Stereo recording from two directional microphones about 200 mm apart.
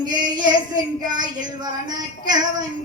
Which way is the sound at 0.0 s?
20° right (ahead or behind).